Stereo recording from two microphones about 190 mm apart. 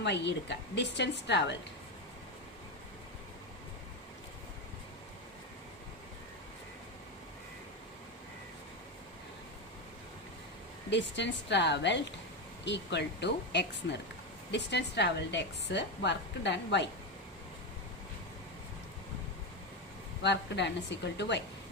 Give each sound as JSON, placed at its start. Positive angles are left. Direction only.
{"t": 0.0, "sound": "a woman's voice", "side_deg": 65}
{"t": 10.8, "sound": "a woman's voice", "side_deg": 70}
{"t": 20.2, "sound": "a woman's voice", "side_deg": 65}